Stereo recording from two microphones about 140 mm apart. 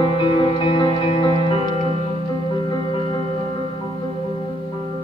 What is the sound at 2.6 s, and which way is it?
Music, 35° left (ahead or behind).